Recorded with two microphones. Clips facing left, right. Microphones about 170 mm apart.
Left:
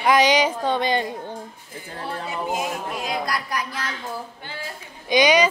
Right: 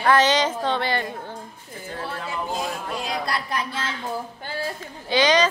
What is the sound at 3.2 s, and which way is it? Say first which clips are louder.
Speech: even; 25° right (ahead or behind).